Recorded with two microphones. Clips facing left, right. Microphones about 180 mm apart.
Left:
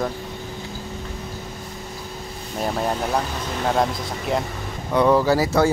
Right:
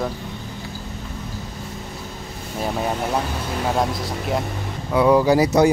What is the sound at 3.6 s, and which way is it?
Speech, centre (ahead or behind).